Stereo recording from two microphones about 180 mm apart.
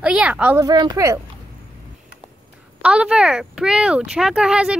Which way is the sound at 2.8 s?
5° right (ahead or behind).